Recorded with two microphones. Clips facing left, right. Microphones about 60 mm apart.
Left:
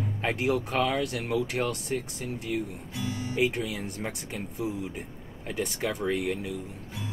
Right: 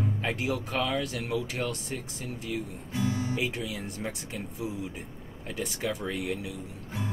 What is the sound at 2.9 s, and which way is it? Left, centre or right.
Speech, right.